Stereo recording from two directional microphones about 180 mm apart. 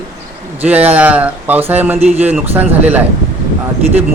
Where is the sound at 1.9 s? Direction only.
35° right (ahead or behind).